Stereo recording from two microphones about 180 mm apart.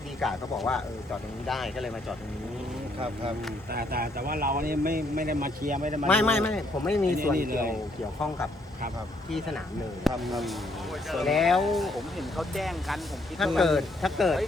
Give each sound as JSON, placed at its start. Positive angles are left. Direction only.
{"t": 0.2, "sound": "speech", "side_deg": 0}
{"t": 3.7, "sound": "speech", "side_deg": -55}
{"t": 6.1, "sound": "a man's voice", "side_deg": 10}
{"t": 7.2, "sound": "speech", "side_deg": -50}
{"t": 10.2, "sound": "speech", "side_deg": 0}